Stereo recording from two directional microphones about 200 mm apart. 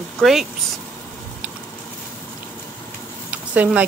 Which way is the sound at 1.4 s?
5° right (ahead or behind).